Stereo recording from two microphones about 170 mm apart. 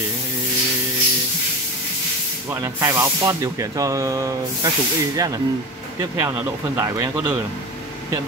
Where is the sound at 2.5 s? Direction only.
15° right (ahead or behind).